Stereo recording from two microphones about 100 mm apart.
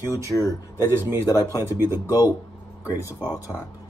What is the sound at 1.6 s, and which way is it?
Speech, 25° right (ahead or behind).